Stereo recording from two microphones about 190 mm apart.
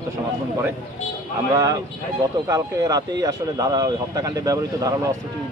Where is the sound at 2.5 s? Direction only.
20° right (ahead or behind).